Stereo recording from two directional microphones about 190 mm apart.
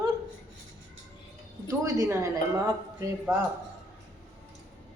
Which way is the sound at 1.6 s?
15° right (ahead or behind).